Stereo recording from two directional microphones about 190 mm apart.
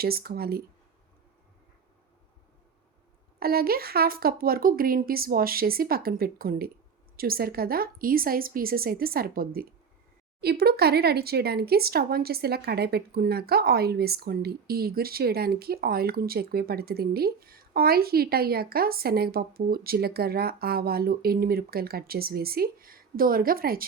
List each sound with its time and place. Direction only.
0.0 s speech: 55° right (ahead or behind)
3.4 s speech: 55° right (ahead or behind)